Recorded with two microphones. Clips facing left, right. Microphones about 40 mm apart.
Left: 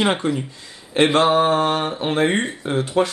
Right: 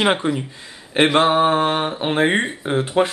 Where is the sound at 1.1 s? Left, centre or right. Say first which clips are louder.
Right 1 dB; centre.